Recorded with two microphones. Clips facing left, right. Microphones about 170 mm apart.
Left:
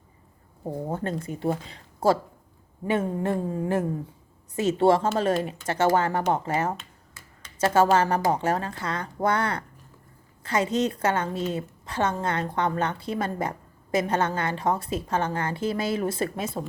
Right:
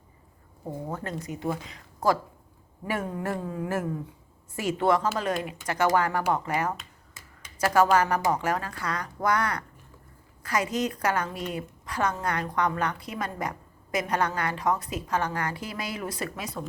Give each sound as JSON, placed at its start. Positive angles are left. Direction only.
{"t": 0.6, "sound": "a woman's voice", "side_deg": 30}